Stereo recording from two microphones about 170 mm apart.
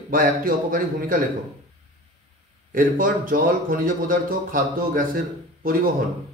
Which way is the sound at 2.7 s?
55° right (ahead or behind).